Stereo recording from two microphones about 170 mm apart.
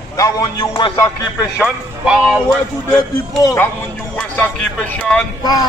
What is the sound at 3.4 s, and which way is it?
Speech, 20° left (ahead or behind).